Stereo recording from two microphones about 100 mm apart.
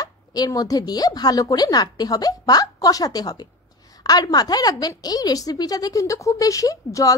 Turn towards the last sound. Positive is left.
turn(degrees=35)  # may be behind; listen again after turning